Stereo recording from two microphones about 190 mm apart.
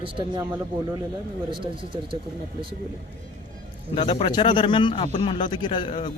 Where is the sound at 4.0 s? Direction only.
25° left (ahead or behind).